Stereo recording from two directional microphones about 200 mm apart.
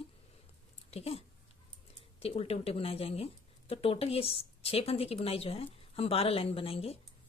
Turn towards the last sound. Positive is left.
turn(degrees=30)  # may be behind; listen again after turning